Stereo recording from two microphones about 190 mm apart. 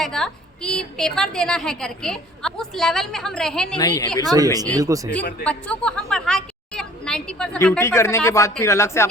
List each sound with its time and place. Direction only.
0.0 s a woman's voice: 5° left (ahead or behind)
3.8 s a woman's voice: 20° left (ahead or behind)
4.2 s speech: 20° right (ahead or behind)
5.5 s speech: 5° left (ahead or behind)